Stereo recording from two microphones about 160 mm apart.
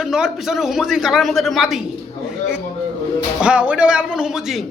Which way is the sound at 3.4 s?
5° right (ahead or behind).